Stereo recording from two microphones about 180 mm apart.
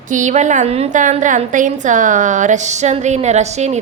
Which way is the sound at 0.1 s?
45° right (ahead or behind).